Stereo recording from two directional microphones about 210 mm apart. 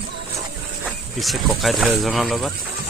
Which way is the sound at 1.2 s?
Centre (ahead or behind).